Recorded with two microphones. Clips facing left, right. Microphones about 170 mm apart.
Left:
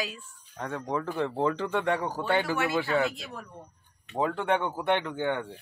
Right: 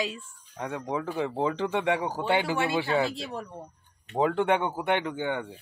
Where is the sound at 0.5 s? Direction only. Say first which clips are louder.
Even; 10° right (ahead or behind); by 3.4 s 30° right (ahead or behind).